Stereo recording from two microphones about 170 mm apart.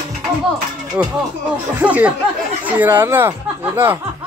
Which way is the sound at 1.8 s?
10° right (ahead or behind).